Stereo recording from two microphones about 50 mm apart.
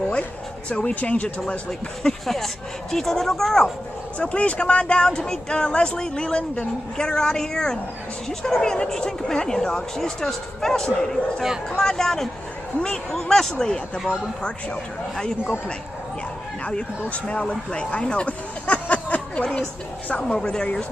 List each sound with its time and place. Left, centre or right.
0.7 s speech: left
1.7 s speech: centre
4.2 s speech: left
17.1 s speech: left